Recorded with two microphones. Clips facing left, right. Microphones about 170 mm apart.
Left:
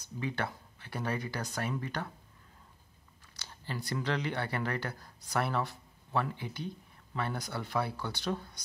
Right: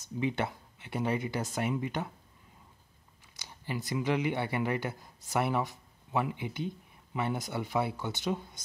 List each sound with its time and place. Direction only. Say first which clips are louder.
0.2 s speech: right 4 dB; 20° right (ahead or behind)
3.3 s speech: right 3 dB; 15° right (ahead or behind)